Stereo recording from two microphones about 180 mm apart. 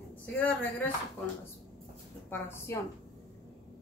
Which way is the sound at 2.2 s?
10° left (ahead or behind).